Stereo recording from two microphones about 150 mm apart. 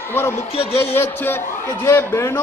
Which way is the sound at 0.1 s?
15° left (ahead or behind).